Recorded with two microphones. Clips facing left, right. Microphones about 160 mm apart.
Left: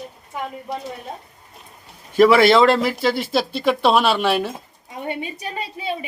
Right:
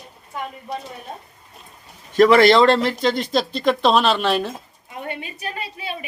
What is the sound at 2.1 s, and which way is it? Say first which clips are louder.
Speech: even; 5° left (ahead or behind).